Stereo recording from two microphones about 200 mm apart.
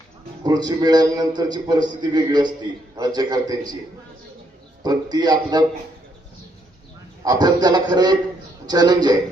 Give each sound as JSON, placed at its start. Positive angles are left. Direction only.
{"t": 0.4, "sound": "a man's voice", "side_deg": -20}
{"t": 4.8, "sound": "a man's voice", "side_deg": -20}
{"t": 7.3, "sound": "a man's voice", "side_deg": -20}